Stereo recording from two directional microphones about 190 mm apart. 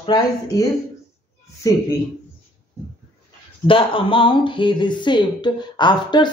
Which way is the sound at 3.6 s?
25° left (ahead or behind).